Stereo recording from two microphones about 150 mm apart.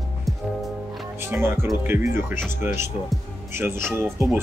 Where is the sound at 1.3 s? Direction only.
15° right (ahead or behind).